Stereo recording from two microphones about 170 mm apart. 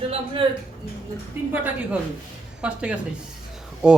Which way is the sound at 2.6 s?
5° right (ahead or behind).